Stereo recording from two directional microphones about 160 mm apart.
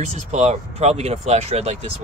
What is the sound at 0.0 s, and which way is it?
Speech, 45° right (ahead or behind).